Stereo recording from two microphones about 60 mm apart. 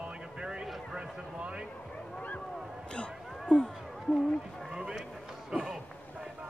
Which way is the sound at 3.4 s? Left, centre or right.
Centre.